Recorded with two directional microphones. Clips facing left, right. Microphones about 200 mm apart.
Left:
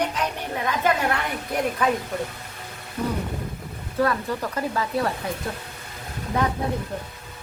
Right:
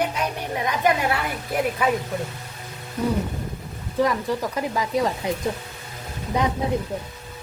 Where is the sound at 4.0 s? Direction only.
15° right (ahead or behind).